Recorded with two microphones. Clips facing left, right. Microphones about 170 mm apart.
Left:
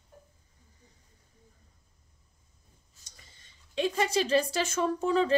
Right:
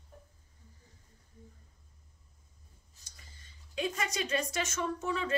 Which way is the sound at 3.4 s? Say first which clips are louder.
Left 5 dB; 25° left (ahead or behind).